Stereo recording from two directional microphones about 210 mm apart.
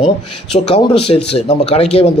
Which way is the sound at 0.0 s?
25° left (ahead or behind).